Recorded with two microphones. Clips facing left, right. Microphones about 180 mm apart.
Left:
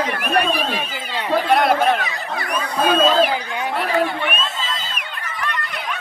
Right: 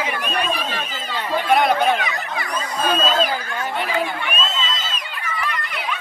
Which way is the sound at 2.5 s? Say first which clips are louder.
Left 4 dB; 65° left (ahead or behind).